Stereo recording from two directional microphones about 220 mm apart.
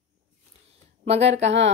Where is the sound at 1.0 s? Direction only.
30° right (ahead or behind).